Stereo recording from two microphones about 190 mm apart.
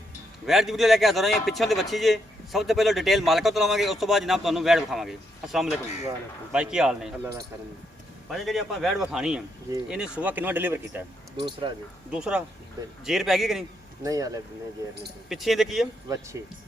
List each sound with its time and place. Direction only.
0.4 s a man's voice: centre (ahead or behind)
8.3 s a man's voice: centre (ahead or behind)
11.3 s speech: 25° right (ahead or behind)
12.1 s a man's voice: 5° right (ahead or behind)
14.0 s speech: 20° right (ahead or behind)
15.3 s a man's voice: centre (ahead or behind)
16.0 s speech: 15° right (ahead or behind)